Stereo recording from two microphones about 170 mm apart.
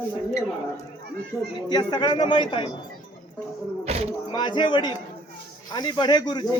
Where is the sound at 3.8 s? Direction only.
40° right (ahead or behind).